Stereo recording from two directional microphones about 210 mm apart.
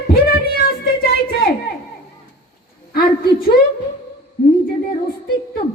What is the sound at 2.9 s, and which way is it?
Speech, 45° left (ahead or behind).